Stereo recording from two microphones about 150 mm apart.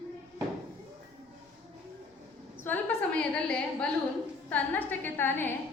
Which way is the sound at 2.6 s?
10° left (ahead or behind).